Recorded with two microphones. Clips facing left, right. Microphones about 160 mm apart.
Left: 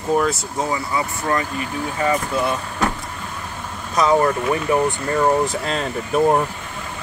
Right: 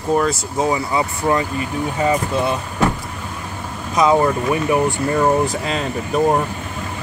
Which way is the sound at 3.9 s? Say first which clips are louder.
Right 2 dB; 15° right (ahead or behind).